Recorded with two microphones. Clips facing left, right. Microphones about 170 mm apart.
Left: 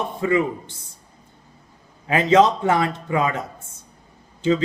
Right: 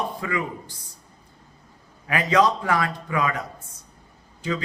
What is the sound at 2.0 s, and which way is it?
A man's voice, 25° left (ahead or behind).